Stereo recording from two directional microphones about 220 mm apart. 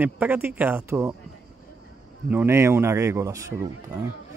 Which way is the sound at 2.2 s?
10° right (ahead or behind).